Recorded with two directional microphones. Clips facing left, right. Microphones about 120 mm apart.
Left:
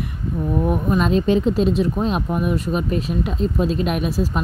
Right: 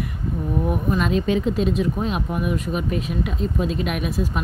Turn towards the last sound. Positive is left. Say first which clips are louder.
# left 3 dB
turn(degrees=30)  # may be behind; listen again after turning